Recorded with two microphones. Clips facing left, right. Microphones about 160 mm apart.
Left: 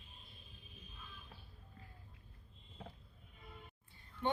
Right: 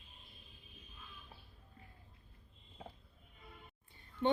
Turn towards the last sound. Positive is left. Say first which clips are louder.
# right 5 dB
turn(degrees=-25)  # may be behind; listen again after turning